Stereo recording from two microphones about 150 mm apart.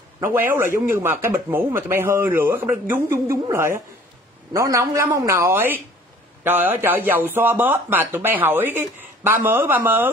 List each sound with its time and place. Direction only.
0.2 s a woman's voice: 15° right (ahead or behind)